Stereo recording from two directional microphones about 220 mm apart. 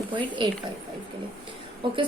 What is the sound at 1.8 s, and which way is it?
Speech, 20° right (ahead or behind).